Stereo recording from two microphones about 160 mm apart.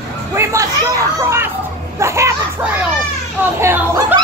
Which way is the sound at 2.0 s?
20° right (ahead or behind).